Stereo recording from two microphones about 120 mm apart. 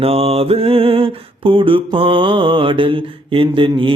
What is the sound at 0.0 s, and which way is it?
Mantra, 55° right (ahead or behind).